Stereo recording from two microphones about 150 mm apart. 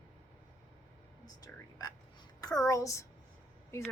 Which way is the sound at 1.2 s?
25° left (ahead or behind).